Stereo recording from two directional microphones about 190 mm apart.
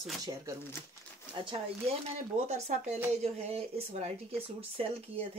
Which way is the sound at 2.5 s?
35° right (ahead or behind).